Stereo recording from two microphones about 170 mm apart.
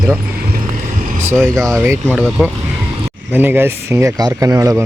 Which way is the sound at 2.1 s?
5° right (ahead or behind).